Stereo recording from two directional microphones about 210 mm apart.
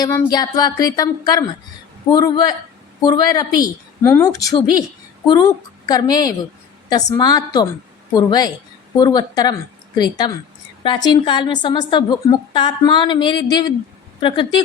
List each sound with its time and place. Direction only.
0.0 s a woman's voice: 15° left (ahead or behind)